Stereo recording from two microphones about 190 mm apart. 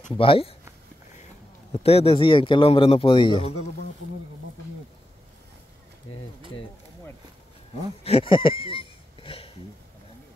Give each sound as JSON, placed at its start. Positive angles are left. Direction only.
{"t": 0.2, "sound": "a man's voice", "side_deg": 30}
{"t": 1.7, "sound": "a man's voice", "side_deg": 30}
{"t": 8.0, "sound": "a sound", "side_deg": 30}